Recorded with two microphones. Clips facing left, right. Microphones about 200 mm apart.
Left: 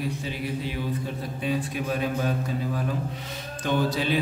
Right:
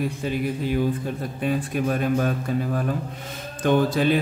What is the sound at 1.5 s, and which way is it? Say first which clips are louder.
Mantra: right 4 dB; 50° right (ahead or behind).